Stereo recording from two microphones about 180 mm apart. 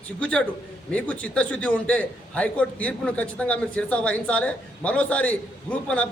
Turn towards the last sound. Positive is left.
turn(degrees=5)  # may be behind; listen again after turning